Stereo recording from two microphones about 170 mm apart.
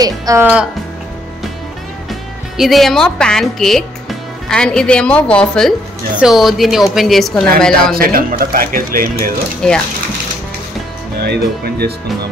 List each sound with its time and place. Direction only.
0.0 s speech: 20° right (ahead or behind)
2.0 s a woman's voice: centre (ahead or behind)
7.9 s speech: 60° right (ahead or behind)
9.6 s a woman's voice: 5° left (ahead or behind)
11.2 s speech: 70° right (ahead or behind)